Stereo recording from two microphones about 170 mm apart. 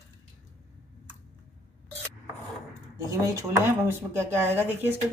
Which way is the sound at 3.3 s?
15° right (ahead or behind).